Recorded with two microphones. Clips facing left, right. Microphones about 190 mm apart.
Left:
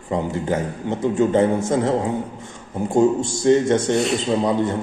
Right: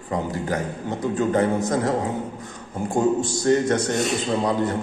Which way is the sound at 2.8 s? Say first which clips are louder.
Left 4 dB; 25° left (ahead or behind).